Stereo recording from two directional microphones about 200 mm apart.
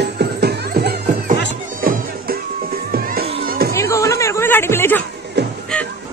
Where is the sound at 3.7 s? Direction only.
15° left (ahead or behind).